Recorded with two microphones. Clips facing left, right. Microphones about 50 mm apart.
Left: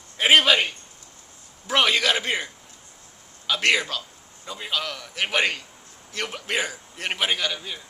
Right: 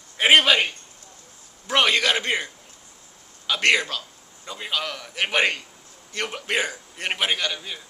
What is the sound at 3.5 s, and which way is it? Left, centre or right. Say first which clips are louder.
A man's voice: right 1 dB; centre.